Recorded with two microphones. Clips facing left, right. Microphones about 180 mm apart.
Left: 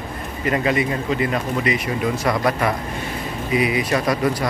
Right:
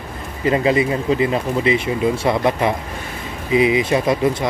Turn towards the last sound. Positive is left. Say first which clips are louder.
# right 3 dB
turn(degrees=-25)  # may be behind; listen again after turning